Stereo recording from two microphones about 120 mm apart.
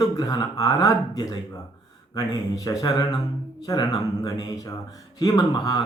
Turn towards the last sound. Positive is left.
turn(degrees=35)  # may be behind; listen again after turning